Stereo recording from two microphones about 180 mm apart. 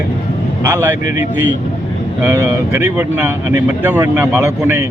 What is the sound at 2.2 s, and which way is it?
Speech, 15° right (ahead or behind).